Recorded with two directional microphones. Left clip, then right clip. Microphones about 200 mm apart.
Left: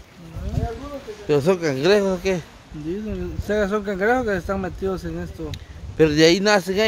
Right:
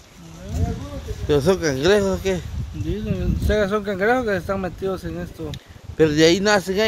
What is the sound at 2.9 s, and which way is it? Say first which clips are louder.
Speech: right 1 dB; 20° right (ahead or behind).